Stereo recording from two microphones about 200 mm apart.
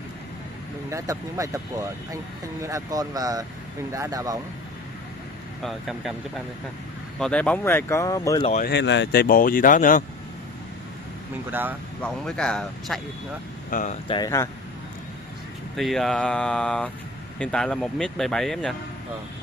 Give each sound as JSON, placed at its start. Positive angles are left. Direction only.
{"t": 0.8, "sound": "speech", "side_deg": -15}
{"t": 2.6, "sound": "speech", "side_deg": -15}
{"t": 5.6, "sound": "speech", "side_deg": 0}
{"t": 7.2, "sound": "speech", "side_deg": 5}
{"t": 8.6, "sound": "speech", "side_deg": 60}
{"t": 11.5, "sound": "speech", "side_deg": -10}
{"t": 12.0, "sound": "speech", "side_deg": 5}
{"t": 13.7, "sound": "speech", "side_deg": 40}
{"t": 14.0, "sound": "speech", "side_deg": 20}
{"t": 15.7, "sound": "speech", "side_deg": 0}